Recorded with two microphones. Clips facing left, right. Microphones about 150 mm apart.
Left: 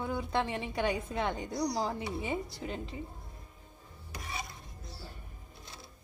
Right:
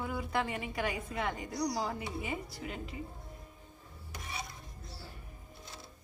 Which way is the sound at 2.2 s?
Centre (ahead or behind).